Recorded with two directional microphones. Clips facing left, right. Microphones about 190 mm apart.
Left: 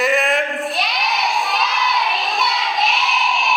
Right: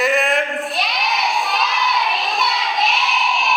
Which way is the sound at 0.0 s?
Centre (ahead or behind).